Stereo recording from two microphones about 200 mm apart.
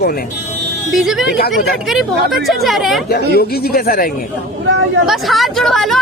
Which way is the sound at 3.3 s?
50° left (ahead or behind).